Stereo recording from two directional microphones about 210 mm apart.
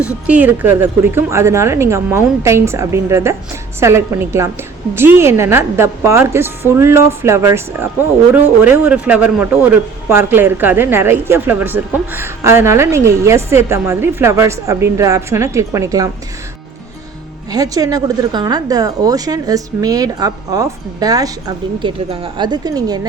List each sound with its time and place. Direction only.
0.0 s a woman's voice: 5° right (ahead or behind)
17.5 s a woman's voice: 15° right (ahead or behind)